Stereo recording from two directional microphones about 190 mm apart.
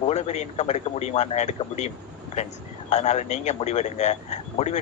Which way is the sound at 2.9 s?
35° left (ahead or behind).